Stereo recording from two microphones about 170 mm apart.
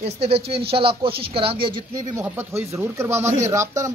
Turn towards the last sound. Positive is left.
turn(degrees=-15)  # may be behind; listen again after turning